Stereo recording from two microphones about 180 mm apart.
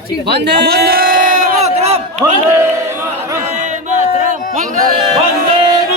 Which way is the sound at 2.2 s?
15° right (ahead or behind).